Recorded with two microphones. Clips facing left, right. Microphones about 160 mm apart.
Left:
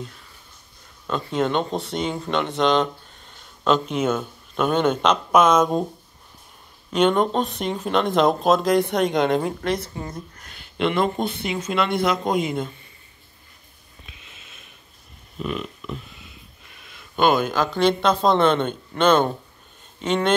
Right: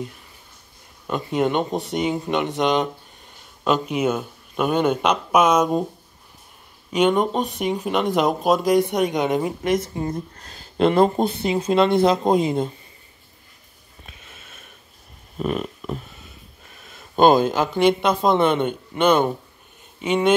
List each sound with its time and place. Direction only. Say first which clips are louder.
1.0 s speech: right 2 dB; 10° right (ahead or behind)
6.9 s speech: even; 10° right (ahead or behind)
9.9 s speech: right 6 dB; 30° right (ahead or behind)
14.0 s sniff: right 3 dB; 45° right (ahead or behind)
15.3 s speech: right 4 dB; 45° right (ahead or behind)
16.8 s a sound: right 4 dB; 40° right (ahead or behind)
17.7 s speech: right 1 dB; 15° right (ahead or behind)